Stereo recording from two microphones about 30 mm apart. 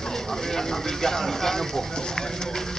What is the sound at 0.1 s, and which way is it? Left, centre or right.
Speech, centre.